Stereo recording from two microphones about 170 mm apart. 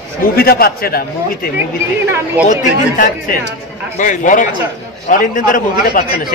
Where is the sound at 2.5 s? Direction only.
50° left (ahead or behind).